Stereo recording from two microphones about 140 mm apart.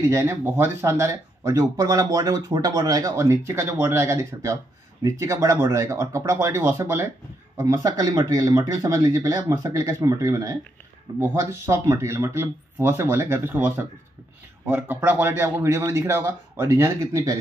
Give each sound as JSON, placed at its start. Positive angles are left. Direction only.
{"t": 0.1, "sound": "speech", "side_deg": -20}